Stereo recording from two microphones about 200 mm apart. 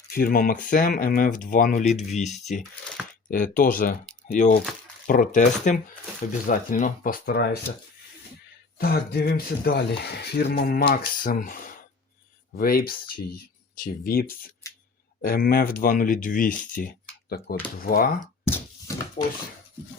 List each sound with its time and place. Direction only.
0.1 s speech: 45° left (ahead or behind)
8.8 s speech: 50° left (ahead or behind)